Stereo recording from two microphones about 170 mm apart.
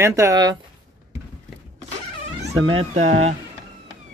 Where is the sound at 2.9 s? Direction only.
40° right (ahead or behind).